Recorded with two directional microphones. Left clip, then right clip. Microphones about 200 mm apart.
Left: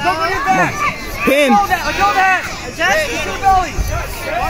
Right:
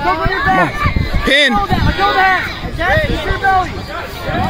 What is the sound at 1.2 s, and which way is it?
Speech, 5° right (ahead or behind).